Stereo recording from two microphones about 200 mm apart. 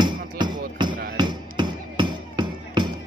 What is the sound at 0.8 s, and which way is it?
Music, 25° right (ahead or behind).